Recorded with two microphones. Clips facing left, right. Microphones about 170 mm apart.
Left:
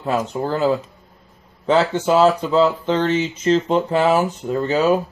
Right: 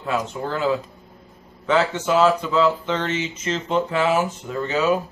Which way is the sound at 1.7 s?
35° left (ahead or behind).